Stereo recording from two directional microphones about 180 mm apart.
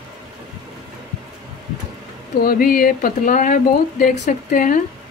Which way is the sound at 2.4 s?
55° left (ahead or behind).